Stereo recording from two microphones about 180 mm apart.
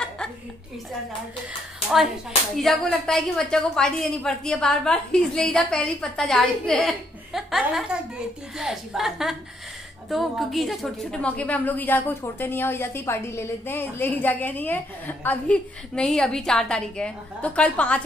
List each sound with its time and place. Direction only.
2.5 s a woman's voice: centre (ahead or behind)